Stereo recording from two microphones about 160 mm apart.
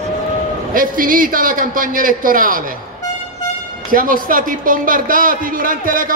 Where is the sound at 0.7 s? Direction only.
60° right (ahead or behind).